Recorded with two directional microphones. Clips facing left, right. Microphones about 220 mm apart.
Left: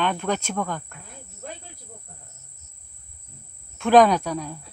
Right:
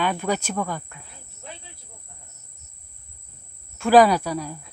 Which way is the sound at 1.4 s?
45° left (ahead or behind).